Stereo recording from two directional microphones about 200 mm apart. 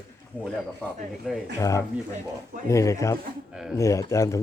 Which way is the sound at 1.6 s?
15° left (ahead or behind).